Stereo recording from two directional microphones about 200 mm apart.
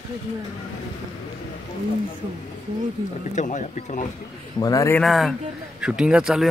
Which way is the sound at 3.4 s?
40° left (ahead or behind).